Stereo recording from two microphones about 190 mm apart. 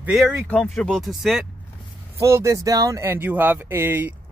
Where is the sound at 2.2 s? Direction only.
15° right (ahead or behind).